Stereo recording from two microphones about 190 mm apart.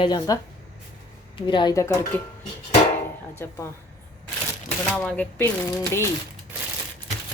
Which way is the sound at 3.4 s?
10° left (ahead or behind).